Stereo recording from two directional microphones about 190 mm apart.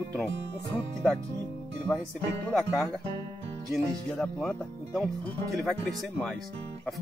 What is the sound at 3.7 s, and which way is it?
Speech, centre (ahead or behind).